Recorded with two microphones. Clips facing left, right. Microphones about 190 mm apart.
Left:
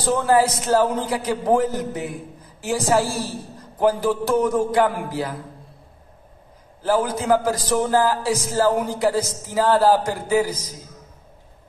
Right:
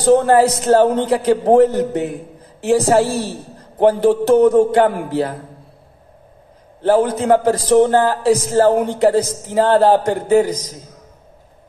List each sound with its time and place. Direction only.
0.4 s a man's voice: 35° right (ahead or behind)
6.8 s a man's voice: 30° right (ahead or behind)
9.9 s a man's voice: 65° right (ahead or behind)
10.2 s a man's voice: 30° right (ahead or behind)